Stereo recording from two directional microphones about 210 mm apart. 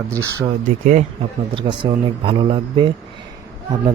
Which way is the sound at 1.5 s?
25° right (ahead or behind).